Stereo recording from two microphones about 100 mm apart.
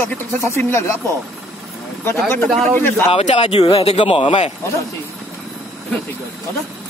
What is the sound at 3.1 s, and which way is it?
Speech, 90° left.